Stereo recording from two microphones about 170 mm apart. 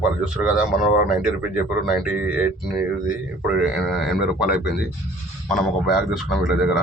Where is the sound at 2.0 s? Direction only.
5° right (ahead or behind).